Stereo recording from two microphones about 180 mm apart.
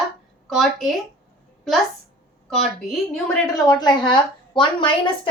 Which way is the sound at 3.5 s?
20° left (ahead or behind).